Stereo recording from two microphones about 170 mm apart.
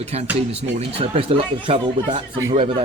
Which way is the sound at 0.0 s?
40° right (ahead or behind).